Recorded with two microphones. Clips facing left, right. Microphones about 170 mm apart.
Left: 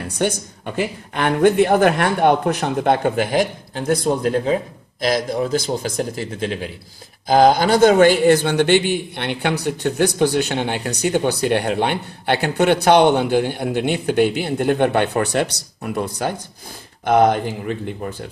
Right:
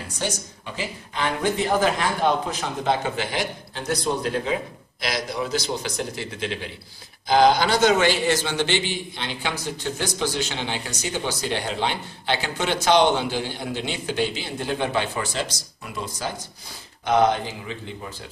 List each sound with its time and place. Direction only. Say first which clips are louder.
0.0 s a man's voice: left 8 dB; 55° left (ahead or behind)